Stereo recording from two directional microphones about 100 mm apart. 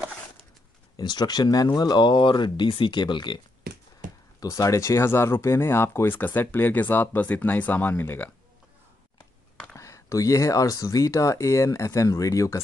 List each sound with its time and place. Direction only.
0.9 s speech: 45° left (ahead or behind)
4.4 s speech: 35° left (ahead or behind)
9.8 s speech: 30° left (ahead or behind)